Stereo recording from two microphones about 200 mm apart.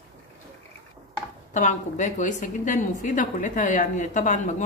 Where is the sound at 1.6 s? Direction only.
40° left (ahead or behind).